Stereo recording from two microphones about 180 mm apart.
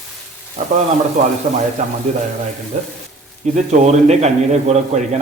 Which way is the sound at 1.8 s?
40° right (ahead or behind).